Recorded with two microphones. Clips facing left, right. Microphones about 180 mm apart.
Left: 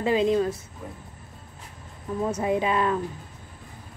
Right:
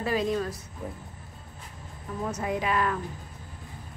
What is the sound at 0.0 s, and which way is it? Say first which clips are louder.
Speech: left 5 dB; 20° left (ahead or behind).